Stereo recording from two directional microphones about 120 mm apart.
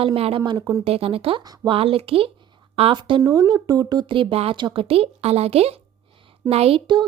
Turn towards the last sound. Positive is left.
turn(degrees=-55)  # may be behind; listen again after turning